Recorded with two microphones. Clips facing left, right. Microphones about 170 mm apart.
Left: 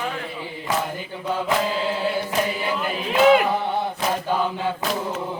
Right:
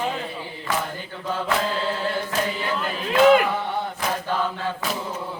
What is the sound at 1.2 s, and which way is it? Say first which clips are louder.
Chant: left 2 dB; 10° left (ahead or behind).